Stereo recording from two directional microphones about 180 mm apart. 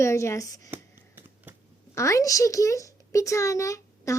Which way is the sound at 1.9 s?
15° left (ahead or behind).